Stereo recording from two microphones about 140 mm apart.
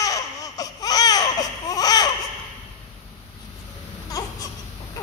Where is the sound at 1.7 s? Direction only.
25° left (ahead or behind).